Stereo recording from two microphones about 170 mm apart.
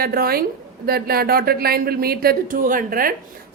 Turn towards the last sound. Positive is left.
turn(degrees=-55)  # may be behind; listen again after turning